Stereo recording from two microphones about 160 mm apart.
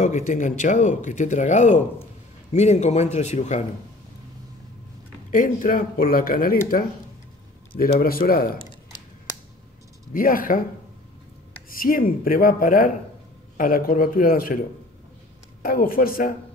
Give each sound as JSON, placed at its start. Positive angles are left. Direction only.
{"t": 0.0, "sound": "speech", "side_deg": 50}
{"t": 5.3, "sound": "speech", "side_deg": 55}
{"t": 7.7, "sound": "speech", "side_deg": 65}
{"t": 10.1, "sound": "speech", "side_deg": 60}
{"t": 11.7, "sound": "speech", "side_deg": 65}
{"t": 15.6, "sound": "speech", "side_deg": 65}